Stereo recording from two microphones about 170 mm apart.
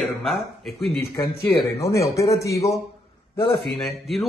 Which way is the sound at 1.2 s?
15° left (ahead or behind).